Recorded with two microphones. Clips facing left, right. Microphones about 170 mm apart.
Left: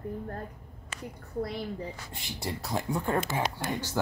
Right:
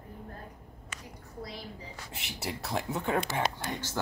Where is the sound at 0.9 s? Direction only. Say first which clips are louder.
Left 7 dB; 30° left (ahead or behind).